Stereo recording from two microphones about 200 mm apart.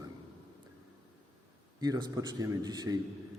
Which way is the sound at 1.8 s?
20° right (ahead or behind).